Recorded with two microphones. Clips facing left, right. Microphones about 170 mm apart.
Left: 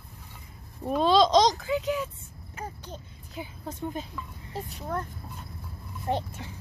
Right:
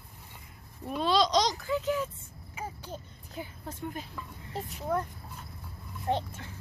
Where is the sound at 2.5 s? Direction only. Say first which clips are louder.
Even; 5° right (ahead or behind).